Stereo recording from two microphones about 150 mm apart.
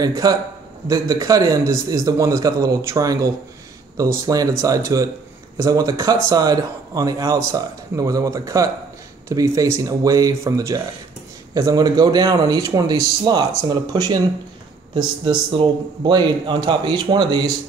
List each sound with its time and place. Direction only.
0.0 s a man's voice: 25° right (ahead or behind)